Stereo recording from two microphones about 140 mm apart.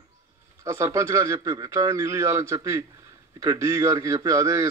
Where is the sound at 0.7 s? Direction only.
20° right (ahead or behind).